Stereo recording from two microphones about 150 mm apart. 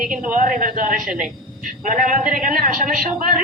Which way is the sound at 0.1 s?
60° right (ahead or behind).